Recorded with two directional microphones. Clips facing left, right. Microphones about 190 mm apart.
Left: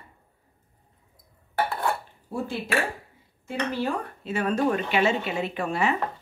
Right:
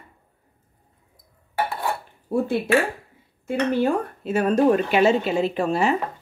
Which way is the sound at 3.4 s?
50° right (ahead or behind).